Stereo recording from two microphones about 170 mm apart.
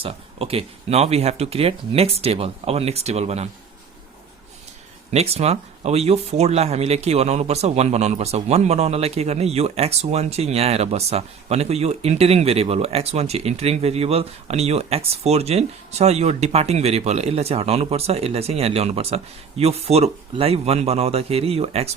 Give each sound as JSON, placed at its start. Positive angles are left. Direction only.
{"t": 0.0, "sound": "speech", "side_deg": -35}
{"t": 5.1, "sound": "speech", "side_deg": -35}